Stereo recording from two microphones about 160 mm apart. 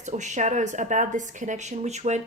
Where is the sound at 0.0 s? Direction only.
50° right (ahead or behind).